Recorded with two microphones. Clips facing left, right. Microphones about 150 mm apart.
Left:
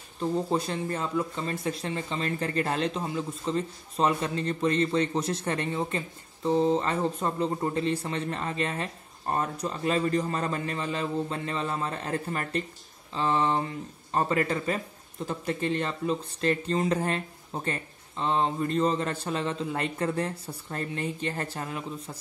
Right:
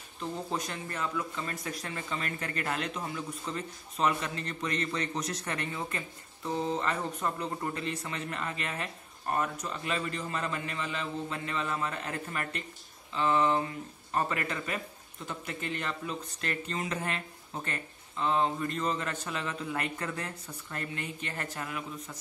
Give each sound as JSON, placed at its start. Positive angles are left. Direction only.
{"t": 0.2, "sound": "speech", "side_deg": 30}